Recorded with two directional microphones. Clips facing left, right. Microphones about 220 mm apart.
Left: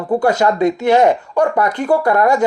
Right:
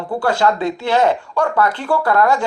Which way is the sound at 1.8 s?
20° left (ahead or behind).